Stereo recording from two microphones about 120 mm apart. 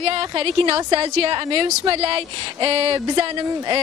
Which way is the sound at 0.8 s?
40° right (ahead or behind).